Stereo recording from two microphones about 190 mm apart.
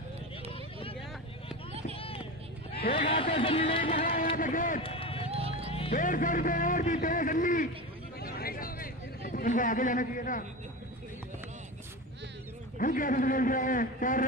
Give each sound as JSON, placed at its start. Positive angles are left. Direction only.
{"t": 0.5, "sound": "vehicle", "side_deg": 30}
{"t": 2.0, "sound": "vehicle", "side_deg": 30}
{"t": 3.1, "sound": "speech", "side_deg": 30}
{"t": 3.8, "sound": "a man's voice", "side_deg": 45}
{"t": 4.8, "sound": "run", "side_deg": 30}
{"t": 5.7, "sound": "music", "side_deg": 30}
{"t": 5.9, "sound": "a man's voice", "side_deg": 45}
{"t": 8.2, "sound": "a sound", "side_deg": 50}
{"t": 12.7, "sound": "a man's voice", "side_deg": 45}